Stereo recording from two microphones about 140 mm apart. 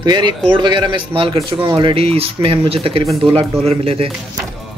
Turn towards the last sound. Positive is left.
turn(degrees=-40)  # may be behind; listen again after turning